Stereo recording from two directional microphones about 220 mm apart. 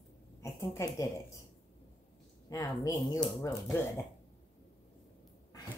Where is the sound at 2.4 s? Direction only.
15° left (ahead or behind).